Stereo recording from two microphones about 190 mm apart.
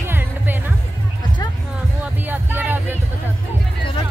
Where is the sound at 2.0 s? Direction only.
10° right (ahead or behind).